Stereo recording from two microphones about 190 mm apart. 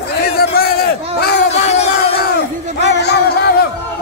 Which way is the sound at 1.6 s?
35° left (ahead or behind).